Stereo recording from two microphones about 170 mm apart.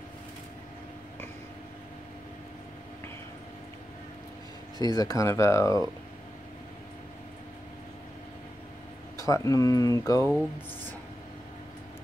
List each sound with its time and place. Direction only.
4.7 s speech: 20° left (ahead or behind)
9.2 s speech: 20° left (ahead or behind)